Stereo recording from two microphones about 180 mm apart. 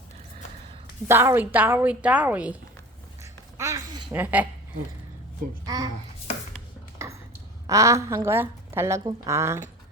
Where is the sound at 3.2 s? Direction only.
15° right (ahead or behind).